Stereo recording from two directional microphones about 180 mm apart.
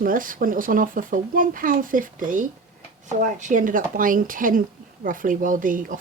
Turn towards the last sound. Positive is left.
turn(degrees=-50)  # may be behind; listen again after turning